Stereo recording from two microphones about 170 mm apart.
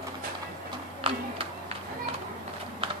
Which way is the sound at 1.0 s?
30° right (ahead or behind).